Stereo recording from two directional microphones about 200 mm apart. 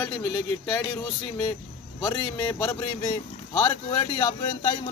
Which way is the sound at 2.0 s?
20° left (ahead or behind).